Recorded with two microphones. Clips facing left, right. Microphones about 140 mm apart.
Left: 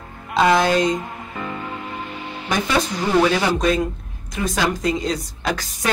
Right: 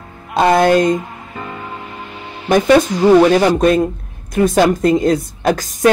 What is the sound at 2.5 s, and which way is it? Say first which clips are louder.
Speech: right 11 dB; 50° right (ahead or behind).